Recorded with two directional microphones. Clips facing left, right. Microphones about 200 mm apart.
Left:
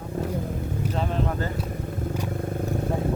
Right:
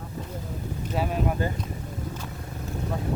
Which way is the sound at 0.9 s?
10° right (ahead or behind).